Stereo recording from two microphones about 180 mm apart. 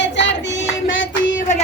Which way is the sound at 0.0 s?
85° left.